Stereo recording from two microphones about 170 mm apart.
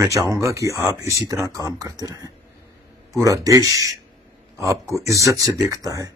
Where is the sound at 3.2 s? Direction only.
20° right (ahead or behind).